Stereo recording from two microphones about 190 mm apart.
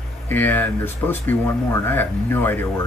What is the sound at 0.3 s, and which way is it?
Speech, 10° left (ahead or behind).